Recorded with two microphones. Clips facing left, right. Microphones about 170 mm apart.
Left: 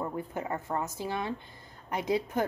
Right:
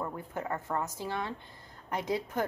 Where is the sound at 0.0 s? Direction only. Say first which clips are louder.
Left 2 dB; 15° left (ahead or behind).